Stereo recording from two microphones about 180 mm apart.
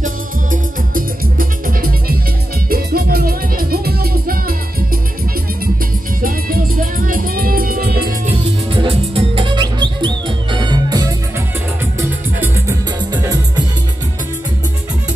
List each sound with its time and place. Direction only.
0.0 s music: 50° right (ahead or behind)
6.2 s music: 50° right (ahead or behind)
8.6 s music: 30° right (ahead or behind)